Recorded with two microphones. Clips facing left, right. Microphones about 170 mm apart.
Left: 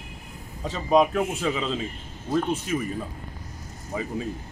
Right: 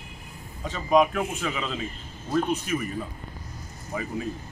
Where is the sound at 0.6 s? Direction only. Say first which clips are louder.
Left 1 dB; 35° left (ahead or behind).